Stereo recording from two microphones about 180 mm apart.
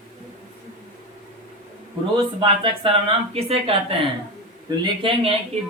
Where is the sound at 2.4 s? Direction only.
30° right (ahead or behind).